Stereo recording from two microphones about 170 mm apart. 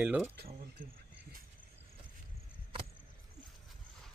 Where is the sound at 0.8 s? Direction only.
55° right (ahead or behind).